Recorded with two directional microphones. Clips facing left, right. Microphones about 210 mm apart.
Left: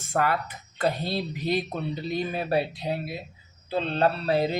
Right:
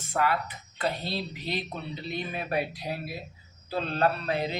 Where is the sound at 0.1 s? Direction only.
45° left (ahead or behind).